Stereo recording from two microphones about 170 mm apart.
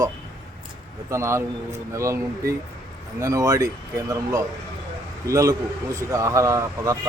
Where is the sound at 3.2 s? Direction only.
20° right (ahead or behind).